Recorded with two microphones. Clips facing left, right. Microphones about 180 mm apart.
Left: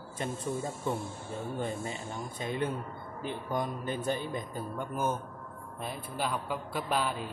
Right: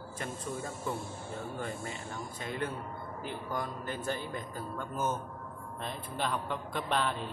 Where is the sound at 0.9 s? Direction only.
25° left (ahead or behind).